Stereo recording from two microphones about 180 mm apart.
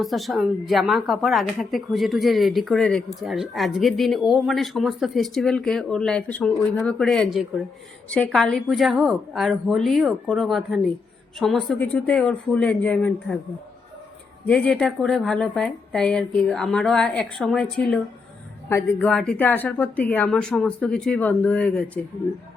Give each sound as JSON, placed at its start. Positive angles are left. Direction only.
{"t": 0.0, "sound": "a woman's voice", "side_deg": 0}
{"t": 7.0, "sound": "a woman's voice", "side_deg": 5}
{"t": 14.4, "sound": "a woman's voice", "side_deg": 5}